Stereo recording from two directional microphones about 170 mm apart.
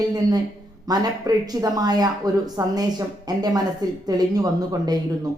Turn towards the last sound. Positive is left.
turn(degrees=-20)  # may be behind; listen again after turning